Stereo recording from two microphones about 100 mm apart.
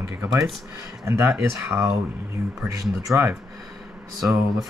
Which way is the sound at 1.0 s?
25° right (ahead or behind).